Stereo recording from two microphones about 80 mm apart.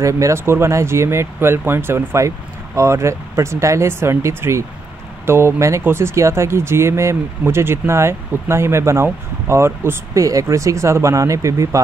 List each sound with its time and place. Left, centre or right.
0.0 s speech: right
10.2 s speech: right